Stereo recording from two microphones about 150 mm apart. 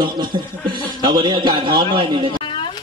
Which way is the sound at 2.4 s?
35° left (ahead or behind).